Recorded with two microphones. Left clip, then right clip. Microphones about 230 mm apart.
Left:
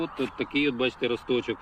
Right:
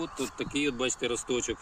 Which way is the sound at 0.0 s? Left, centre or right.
Centre.